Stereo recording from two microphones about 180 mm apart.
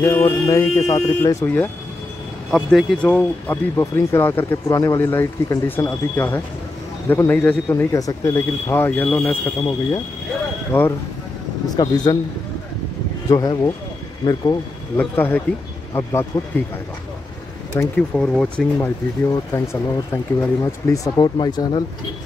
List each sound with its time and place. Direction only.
0.0 s speech: 10° left (ahead or behind)
10.7 s speech: 10° left (ahead or behind)
11.7 s speech: 20° left (ahead or behind)
13.3 s speech: 20° left (ahead or behind)
15.0 s speech: 10° left (ahead or behind)
17.7 s speech: 5° left (ahead or behind); by 21.8 s 25° left (ahead or behind)